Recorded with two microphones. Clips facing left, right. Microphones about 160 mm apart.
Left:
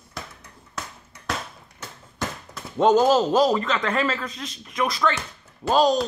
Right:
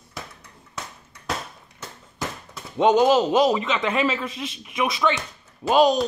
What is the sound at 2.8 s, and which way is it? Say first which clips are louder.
Speech: even; 15° right (ahead or behind).